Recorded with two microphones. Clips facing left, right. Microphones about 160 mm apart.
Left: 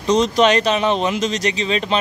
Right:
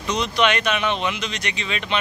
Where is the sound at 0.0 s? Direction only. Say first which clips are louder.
Left 6 dB; 40° left (ahead or behind).